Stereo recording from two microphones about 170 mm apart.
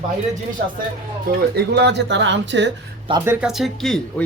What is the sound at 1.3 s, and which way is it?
Speech, 75° right (ahead or behind).